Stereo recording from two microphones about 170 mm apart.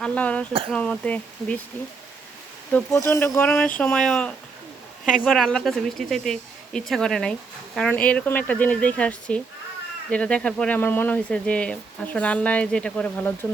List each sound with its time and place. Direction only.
0.0 s speech: 5° left (ahead or behind)
2.7 s speech: 15° left (ahead or behind)
3.4 s speech: 5° left (ahead or behind)